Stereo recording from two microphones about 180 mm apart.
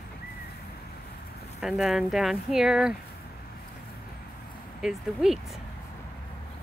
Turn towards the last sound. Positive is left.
turn(degrees=0)  # may be behind; listen again after turning